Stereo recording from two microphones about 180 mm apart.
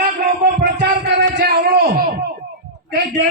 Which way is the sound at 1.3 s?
55° right (ahead or behind).